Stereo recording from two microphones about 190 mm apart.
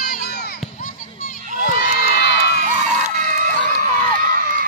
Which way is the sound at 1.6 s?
50° left (ahead or behind).